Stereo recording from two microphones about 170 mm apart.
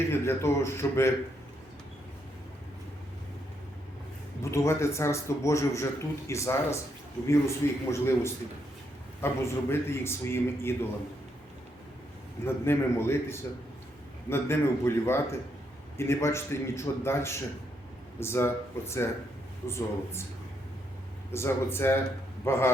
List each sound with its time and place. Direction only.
0.1 s speech: 15° left (ahead or behind)
4.5 s speech: 15° left (ahead or behind)
12.6 s speech: 15° left (ahead or behind)
21.3 s speech: 15° left (ahead or behind)